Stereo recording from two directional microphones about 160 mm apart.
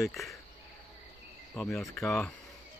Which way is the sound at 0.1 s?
Centre (ahead or behind).